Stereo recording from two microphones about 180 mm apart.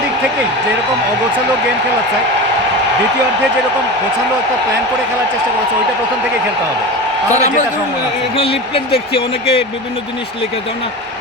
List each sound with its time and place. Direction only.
7.3 s speech: 40° left (ahead or behind)
8.4 s speech: 30° left (ahead or behind)